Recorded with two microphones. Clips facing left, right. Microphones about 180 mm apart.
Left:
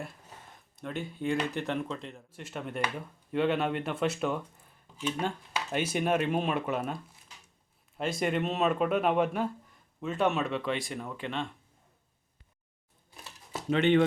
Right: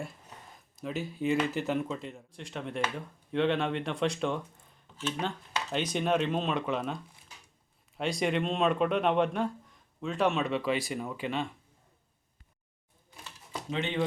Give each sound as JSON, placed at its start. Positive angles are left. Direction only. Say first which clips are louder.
{"t": 0.8, "sound": "speech", "louder": "right 2 dB", "side_deg": 0}
{"t": 5.7, "sound": "speech", "louder": "even", "side_deg": 10}
{"t": 13.7, "sound": "speech", "louder": "left 9 dB", "side_deg": 65}